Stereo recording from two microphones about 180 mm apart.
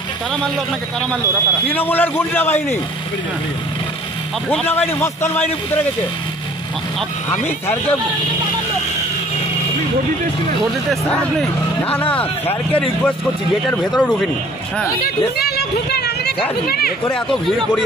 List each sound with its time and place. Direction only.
1.7 s a man's voice: 10° left (ahead or behind)
4.5 s a man's voice: 10° left (ahead or behind)
10.6 s a man's voice: centre (ahead or behind)
15.3 s a sound: 60° left (ahead or behind)
16.6 s speech: 60° left (ahead or behind)
17.1 s speech: 5° left (ahead or behind)